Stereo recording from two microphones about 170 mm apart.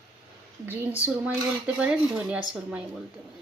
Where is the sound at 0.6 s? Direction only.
10° right (ahead or behind).